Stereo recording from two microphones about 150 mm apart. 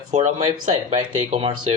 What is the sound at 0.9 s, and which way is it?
Speech, 40° right (ahead or behind).